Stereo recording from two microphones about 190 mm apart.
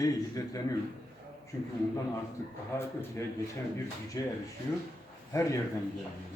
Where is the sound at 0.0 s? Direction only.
15° left (ahead or behind).